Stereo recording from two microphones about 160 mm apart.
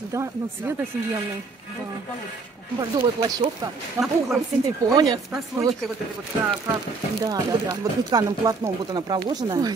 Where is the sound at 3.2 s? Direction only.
25° right (ahead or behind).